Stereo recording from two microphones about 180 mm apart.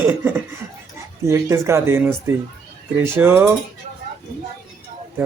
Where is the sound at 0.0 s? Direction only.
10° right (ahead or behind).